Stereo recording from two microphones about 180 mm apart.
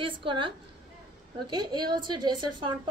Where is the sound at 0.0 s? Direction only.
30° right (ahead or behind).